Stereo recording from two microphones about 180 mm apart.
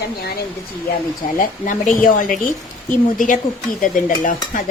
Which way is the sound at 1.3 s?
45° left (ahead or behind).